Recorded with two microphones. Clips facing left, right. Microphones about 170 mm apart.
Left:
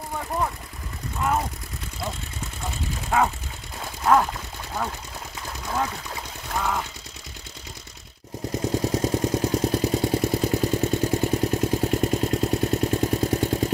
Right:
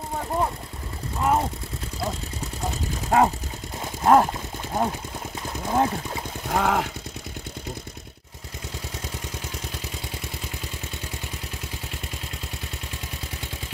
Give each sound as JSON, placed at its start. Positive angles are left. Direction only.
{"t": 3.1, "sound": "speech", "side_deg": -40}
{"t": 4.0, "sound": "a sound", "side_deg": -40}
{"t": 5.7, "sound": "speech", "side_deg": -30}
{"t": 6.5, "sound": "speech", "side_deg": -70}
{"t": 8.6, "sound": "vehicle", "side_deg": 40}